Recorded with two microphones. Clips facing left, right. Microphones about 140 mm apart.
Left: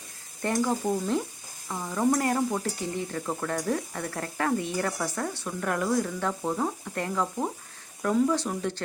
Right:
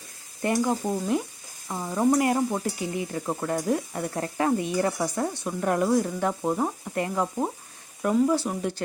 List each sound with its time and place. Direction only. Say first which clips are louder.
0.4 s stir: right 2 dB; 10° right (ahead or behind)